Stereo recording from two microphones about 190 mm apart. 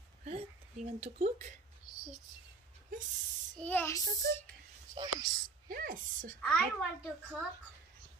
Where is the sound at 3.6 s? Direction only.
10° left (ahead or behind).